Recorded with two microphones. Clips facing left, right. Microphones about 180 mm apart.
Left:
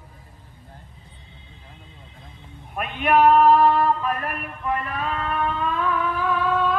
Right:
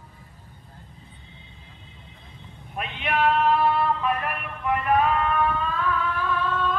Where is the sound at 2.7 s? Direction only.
50° left (ahead or behind).